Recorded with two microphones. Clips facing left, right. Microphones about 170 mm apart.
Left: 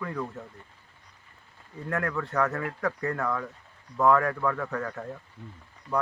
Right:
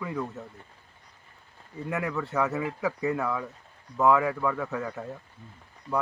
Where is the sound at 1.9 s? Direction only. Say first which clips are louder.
Even; 5° right (ahead or behind).